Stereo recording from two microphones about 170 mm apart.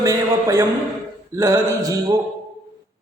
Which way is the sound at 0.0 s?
20° right (ahead or behind).